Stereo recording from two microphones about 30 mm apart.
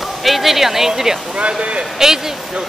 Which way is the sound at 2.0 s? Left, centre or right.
Centre.